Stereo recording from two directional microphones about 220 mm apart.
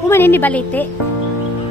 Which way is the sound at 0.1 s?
10° left (ahead or behind).